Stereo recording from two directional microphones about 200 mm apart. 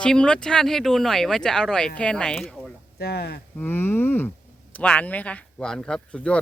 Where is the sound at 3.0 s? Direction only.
50° left (ahead or behind).